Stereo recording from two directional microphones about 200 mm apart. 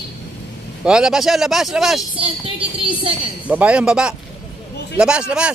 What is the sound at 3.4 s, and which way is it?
Speech, 5° right (ahead or behind).